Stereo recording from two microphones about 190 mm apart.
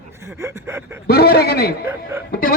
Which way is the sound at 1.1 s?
55° left (ahead or behind).